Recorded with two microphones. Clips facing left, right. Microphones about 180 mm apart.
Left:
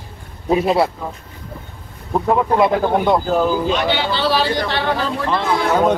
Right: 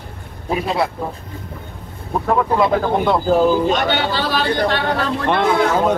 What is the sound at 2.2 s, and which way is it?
Speech, 20° left (ahead or behind).